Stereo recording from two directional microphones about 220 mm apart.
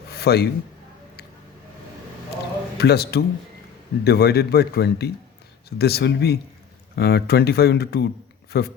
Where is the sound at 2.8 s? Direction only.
45° left (ahead or behind).